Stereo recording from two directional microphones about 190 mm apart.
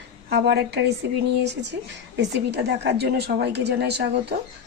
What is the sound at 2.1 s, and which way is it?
Speech, 65° right (ahead or behind).